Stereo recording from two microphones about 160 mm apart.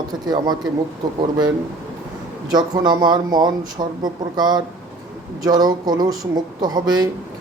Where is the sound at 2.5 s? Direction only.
25° right (ahead or behind).